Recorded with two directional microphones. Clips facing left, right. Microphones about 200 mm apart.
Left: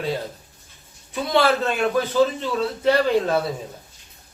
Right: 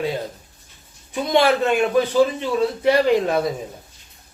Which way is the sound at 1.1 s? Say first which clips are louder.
Right 2 dB; 15° right (ahead or behind).